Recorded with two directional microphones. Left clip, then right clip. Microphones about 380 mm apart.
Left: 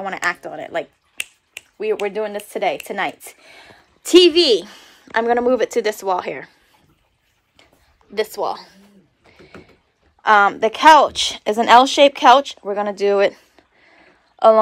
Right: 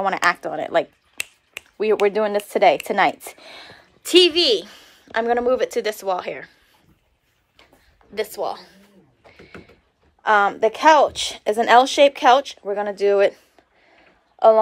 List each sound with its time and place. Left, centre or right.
0.0 s speech: centre
4.0 s a woman's voice: centre
8.1 s a sound: centre
10.2 s speech: centre